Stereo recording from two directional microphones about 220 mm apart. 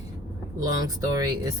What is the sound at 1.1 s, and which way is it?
Speech, 15° right (ahead or behind).